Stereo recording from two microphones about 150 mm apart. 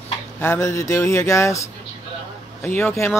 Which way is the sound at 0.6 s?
20° left (ahead or behind).